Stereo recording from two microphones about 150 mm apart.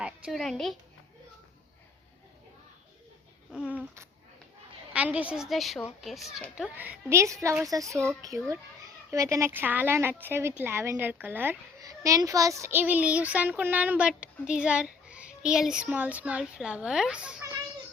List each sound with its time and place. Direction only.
0.0 s a woman's voice: centre (ahead or behind)
3.5 s a child's voice: 5° right (ahead or behind)
6.6 s a woman's voice: 10° right (ahead or behind)